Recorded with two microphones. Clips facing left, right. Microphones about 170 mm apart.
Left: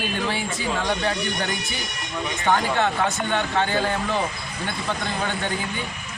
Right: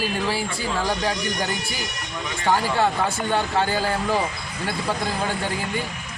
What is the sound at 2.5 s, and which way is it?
Speech, 10° right (ahead or behind).